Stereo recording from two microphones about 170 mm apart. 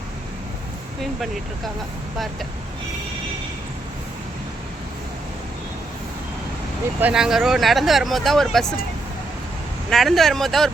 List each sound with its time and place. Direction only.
7.0 s speech: 5° right (ahead or behind)
9.9 s speech: centre (ahead or behind)